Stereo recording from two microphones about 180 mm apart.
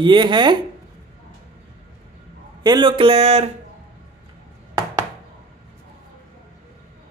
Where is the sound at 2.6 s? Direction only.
25° right (ahead or behind).